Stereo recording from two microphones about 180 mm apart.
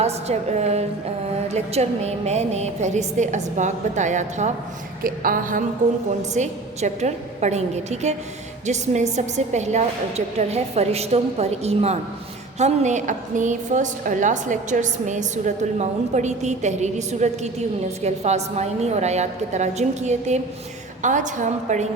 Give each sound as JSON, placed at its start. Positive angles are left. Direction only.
{"t": 0.0, "sound": "a woman's voice", "side_deg": -35}
{"t": 5.0, "sound": "a woman's voice", "side_deg": -50}